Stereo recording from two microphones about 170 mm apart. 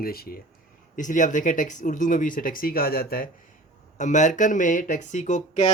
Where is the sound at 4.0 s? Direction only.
45° left (ahead or behind).